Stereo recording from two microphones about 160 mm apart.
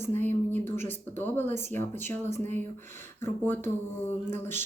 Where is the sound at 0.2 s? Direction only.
10° left (ahead or behind).